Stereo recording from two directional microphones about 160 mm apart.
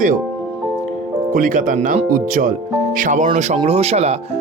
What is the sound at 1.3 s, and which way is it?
Speech, 55° right (ahead or behind).